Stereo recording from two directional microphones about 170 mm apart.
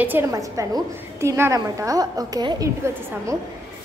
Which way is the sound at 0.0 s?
15° right (ahead or behind).